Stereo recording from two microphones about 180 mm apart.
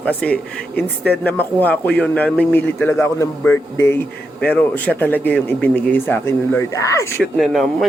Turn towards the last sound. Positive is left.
turn(degrees=0)  # may be behind; listen again after turning